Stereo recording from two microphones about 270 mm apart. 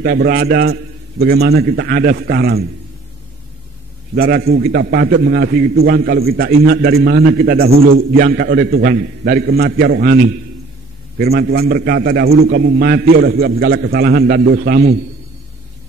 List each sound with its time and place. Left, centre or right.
0.0 s a man's voice: right
4.1 s a man's voice: right